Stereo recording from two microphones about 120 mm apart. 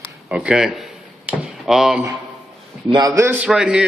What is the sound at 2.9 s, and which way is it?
Speech, 30° right (ahead or behind).